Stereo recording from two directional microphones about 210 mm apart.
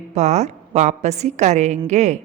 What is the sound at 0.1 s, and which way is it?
A woman's voice, 35° right (ahead or behind).